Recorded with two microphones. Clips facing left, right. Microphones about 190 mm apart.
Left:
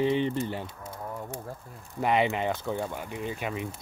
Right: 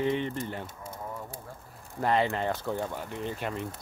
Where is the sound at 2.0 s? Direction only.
15° left (ahead or behind).